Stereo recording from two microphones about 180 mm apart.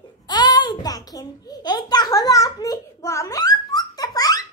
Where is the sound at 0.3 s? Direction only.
25° left (ahead or behind).